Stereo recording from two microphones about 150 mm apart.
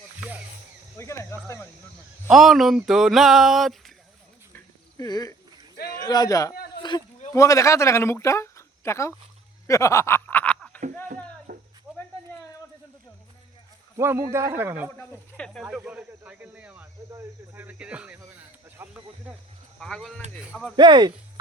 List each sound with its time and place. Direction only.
0.9 s speech: 20° left (ahead or behind)
2.3 s a sound: centre (ahead or behind)
4.9 s speech: 25° left (ahead or behind)
9.6 s snicker: 20° left (ahead or behind)
11.5 s a sound: 75° right (ahead or behind)
11.9 s snake: 5° right (ahead or behind)
13.9 s speech: 20° right (ahead or behind)
14.9 s a sound: 5° left (ahead or behind)
15.6 s speech: 10° right (ahead or behind)
19.8 s a sound: centre (ahead or behind)
20.4 s speech: 5° right (ahead or behind)
20.7 s speech: 30° right (ahead or behind)